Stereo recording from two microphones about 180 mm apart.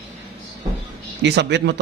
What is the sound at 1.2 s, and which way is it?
Speech, 70° right (ahead or behind).